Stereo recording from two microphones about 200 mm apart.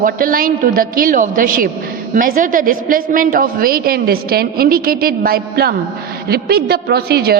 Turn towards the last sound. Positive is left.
turn(degrees=-50)  # may be behind; listen again after turning